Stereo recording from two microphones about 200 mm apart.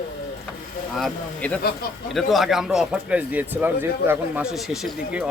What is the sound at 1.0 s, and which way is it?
Speech, 5° left (ahead or behind).